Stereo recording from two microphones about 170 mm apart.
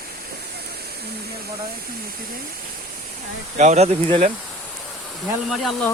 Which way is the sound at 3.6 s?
45° right (ahead or behind).